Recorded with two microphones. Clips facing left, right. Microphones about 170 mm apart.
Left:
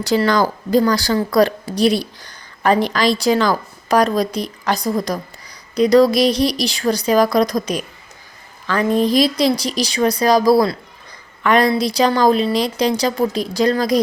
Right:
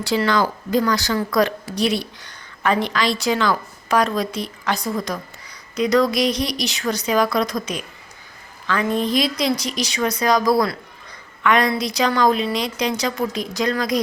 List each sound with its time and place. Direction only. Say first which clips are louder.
0.0 s a woman's voice: left 3 dB; 40° left (ahead or behind)